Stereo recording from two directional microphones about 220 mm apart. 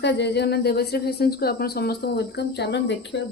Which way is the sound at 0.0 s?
50° left (ahead or behind).